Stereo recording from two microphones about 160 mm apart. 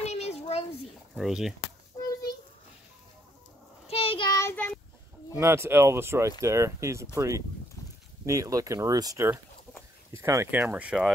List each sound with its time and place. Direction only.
0.0 s a sound: 45° left (ahead or behind)
1.1 s speech: centre (ahead or behind)
3.8 s child singing: 35° left (ahead or behind)
4.4 s child singing: 10° left (ahead or behind)
5.3 s speech: 15° right (ahead or behind)